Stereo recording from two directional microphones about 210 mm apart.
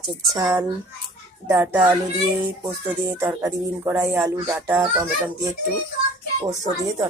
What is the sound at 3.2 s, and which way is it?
Speech, 15° right (ahead or behind).